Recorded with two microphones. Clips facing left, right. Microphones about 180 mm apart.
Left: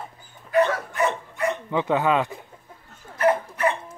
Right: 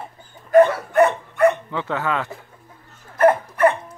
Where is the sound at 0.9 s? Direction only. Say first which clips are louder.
Right 8 dB; 60° right (ahead or behind).